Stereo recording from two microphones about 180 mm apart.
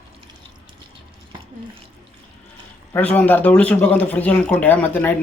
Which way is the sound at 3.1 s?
10° left (ahead or behind).